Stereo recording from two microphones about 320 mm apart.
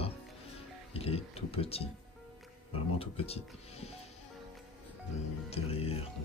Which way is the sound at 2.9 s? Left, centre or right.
Centre.